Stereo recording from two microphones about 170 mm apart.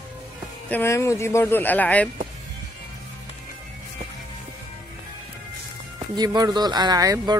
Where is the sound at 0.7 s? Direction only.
15° left (ahead or behind).